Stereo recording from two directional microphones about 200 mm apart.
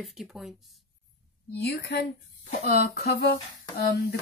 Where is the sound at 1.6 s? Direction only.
55° left (ahead or behind).